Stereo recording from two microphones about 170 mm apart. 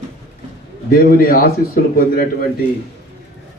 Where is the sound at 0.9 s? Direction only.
55° left (ahead or behind).